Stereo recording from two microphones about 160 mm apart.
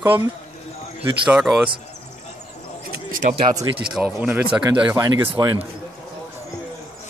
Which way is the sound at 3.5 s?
20° right (ahead or behind).